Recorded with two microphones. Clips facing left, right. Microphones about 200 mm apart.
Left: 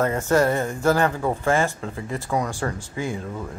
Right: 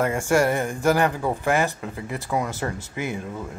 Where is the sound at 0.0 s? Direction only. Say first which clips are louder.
Left 1 dB; 10° right (ahead or behind).